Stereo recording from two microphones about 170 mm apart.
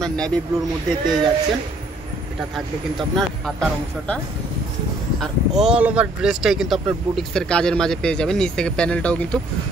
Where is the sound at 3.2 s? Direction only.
5° left (ahead or behind).